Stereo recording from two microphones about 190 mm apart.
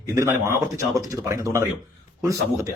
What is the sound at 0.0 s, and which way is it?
Speech, 15° right (ahead or behind).